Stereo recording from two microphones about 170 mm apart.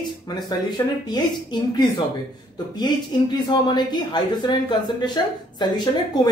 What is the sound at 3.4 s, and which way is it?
Speech, 25° left (ahead or behind).